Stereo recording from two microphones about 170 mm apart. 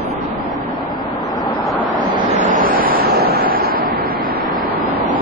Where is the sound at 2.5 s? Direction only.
55° right (ahead or behind).